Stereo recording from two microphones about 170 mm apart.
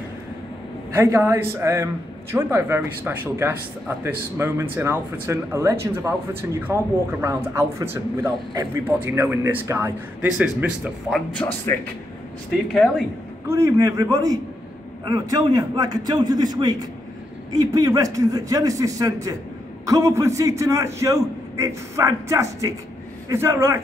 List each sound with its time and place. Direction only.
0.9 s speech: 15° right (ahead or behind)
11.6 s speech: 15° left (ahead or behind)
12.7 s speech: centre (ahead or behind)
13.5 s a man's voice: 15° right (ahead or behind)